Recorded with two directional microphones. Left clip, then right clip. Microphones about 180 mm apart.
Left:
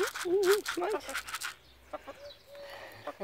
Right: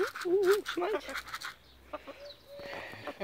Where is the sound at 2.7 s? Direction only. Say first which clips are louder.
Right 2 dB; centre (ahead or behind).